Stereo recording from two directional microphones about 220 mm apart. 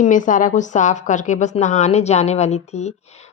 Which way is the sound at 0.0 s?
35° left (ahead or behind).